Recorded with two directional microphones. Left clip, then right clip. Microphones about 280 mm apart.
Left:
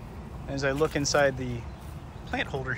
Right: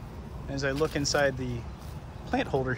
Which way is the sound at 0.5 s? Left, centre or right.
Centre.